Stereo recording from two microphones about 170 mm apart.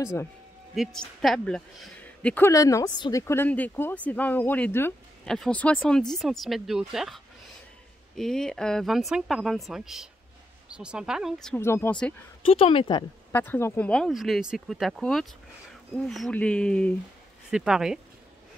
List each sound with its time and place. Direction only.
0.0 s speech: 15° left (ahead or behind)
0.7 s speech: centre (ahead or behind)
8.2 s speech: 5° left (ahead or behind)
11.6 s speech: 15° left (ahead or behind)
12.4 s speech: 35° left (ahead or behind)
13.3 s speech: 10° left (ahead or behind); by 18.0 s 5° right (ahead or behind)